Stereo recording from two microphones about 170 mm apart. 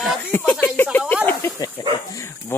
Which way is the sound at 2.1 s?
20° left (ahead or behind).